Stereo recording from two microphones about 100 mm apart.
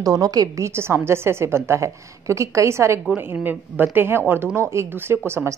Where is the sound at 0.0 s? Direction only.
40° right (ahead or behind).